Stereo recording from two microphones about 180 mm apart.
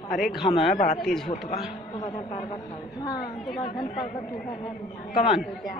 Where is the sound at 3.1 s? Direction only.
Centre (ahead or behind).